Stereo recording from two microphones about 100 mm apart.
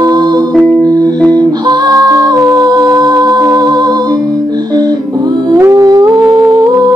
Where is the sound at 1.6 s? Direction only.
40° right (ahead or behind).